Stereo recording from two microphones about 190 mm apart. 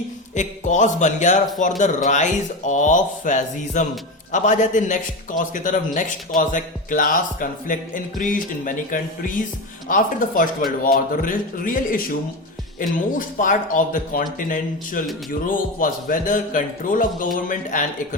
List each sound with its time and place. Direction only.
0.3 s a man's voice: 40° left (ahead or behind)
13.1 s a man's voice: 45° left (ahead or behind)